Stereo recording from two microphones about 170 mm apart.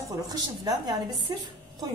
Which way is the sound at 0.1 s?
20° right (ahead or behind).